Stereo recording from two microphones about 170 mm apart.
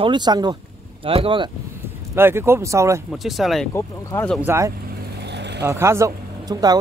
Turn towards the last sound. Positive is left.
turn(degrees=-20)  # may be behind; listen again after turning